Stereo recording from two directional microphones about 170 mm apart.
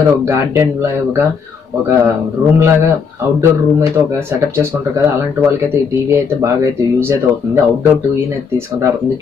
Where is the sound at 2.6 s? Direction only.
15° right (ahead or behind).